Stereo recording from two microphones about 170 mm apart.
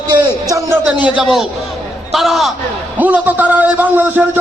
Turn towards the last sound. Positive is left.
turn(degrees=-10)  # may be behind; listen again after turning